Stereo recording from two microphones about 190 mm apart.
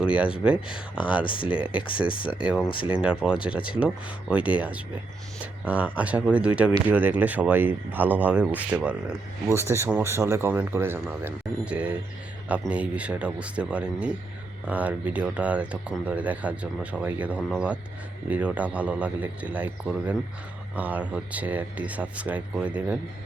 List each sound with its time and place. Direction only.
0.0 s speech: 5° right (ahead or behind)
1.2 s speech: 25° left (ahead or behind)
1.5 s speech: 5° right (ahead or behind)
1.9 s speech: 25° left (ahead or behind)
2.4 s speech: 5° right (ahead or behind)
2.6 s speech: 25° left (ahead or behind)
3.0 s speech: 5° right (ahead or behind)